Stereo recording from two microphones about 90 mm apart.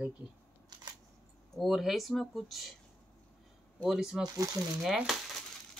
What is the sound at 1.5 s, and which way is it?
Speech, centre (ahead or behind).